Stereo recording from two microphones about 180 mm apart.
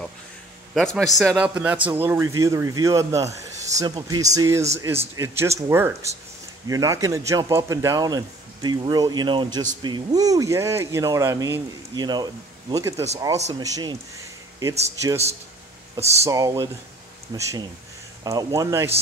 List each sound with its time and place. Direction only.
0.7 s speech: centre (ahead or behind); by 3.3 s 15° right (ahead or behind)
3.3 s a sound: 40° right (ahead or behind)
3.8 s speech: 20° right (ahead or behind)
16.0 s speech: 35° right (ahead or behind)
16.3 s speech: 20° right (ahead or behind)